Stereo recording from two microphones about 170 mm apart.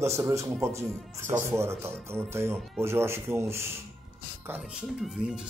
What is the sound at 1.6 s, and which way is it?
Speech, 15° right (ahead or behind).